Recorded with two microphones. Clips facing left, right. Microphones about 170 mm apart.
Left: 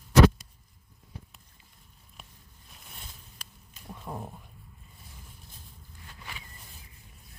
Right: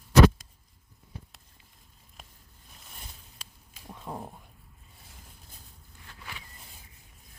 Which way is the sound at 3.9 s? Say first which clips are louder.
Even; 5° right (ahead or behind).